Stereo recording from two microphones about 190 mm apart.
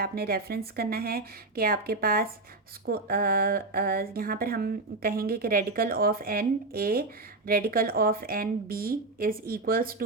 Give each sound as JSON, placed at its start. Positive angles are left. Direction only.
{"t": 0.0, "sound": "speech", "side_deg": -55}